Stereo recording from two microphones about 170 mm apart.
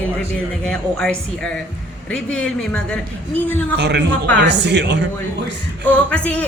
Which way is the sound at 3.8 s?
90° right.